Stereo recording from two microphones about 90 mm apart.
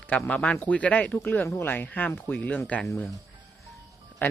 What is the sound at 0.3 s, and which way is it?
A man's voice, 15° left (ahead or behind).